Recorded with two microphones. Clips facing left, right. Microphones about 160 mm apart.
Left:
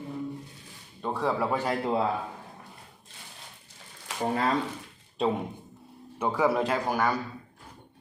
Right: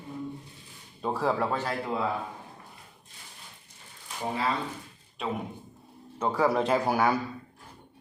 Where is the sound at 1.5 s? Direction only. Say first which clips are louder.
Left 3 dB; 15° left (ahead or behind).